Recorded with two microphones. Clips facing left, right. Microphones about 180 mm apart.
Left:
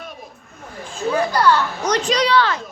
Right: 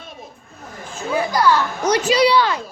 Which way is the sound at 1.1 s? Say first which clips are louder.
Even; 10° right (ahead or behind).